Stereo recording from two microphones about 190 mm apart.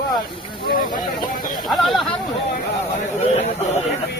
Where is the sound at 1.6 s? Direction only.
Centre (ahead or behind).